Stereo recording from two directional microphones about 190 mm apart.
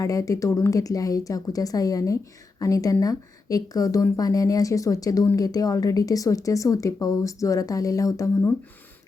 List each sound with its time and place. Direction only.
0.0 s speech: 15° left (ahead or behind)